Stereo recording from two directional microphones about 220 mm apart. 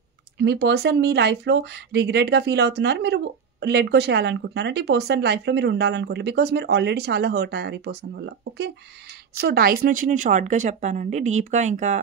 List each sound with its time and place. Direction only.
0.4 s a woman's voice: 50° right (ahead or behind); by 12.0 s 35° right (ahead or behind)